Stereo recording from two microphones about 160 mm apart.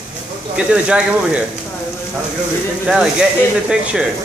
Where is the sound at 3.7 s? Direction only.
5° right (ahead or behind).